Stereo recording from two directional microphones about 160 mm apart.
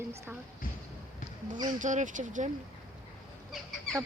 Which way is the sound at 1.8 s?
50° right (ahead or behind).